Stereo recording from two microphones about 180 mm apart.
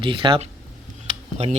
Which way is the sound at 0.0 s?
30° right (ahead or behind).